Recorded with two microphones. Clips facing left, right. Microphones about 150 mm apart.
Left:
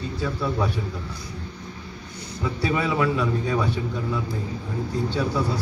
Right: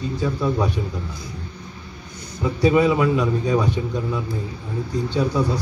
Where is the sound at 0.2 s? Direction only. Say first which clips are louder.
Right 3 dB; 15° right (ahead or behind).